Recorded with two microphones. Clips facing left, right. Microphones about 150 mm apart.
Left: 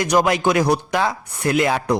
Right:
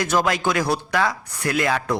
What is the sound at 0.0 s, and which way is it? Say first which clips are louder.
Speech: left 4 dB; 20° left (ahead or behind).